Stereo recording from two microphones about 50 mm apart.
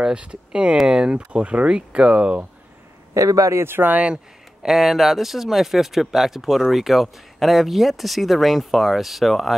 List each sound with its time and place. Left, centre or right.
0.0 s speech: right
3.2 s speech: right
3.6 s speech: right
3.9 s speech: right
4.6 s speech: centre